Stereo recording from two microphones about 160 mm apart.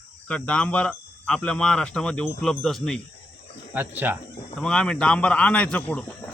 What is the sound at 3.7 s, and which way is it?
Speech, 10° right (ahead or behind).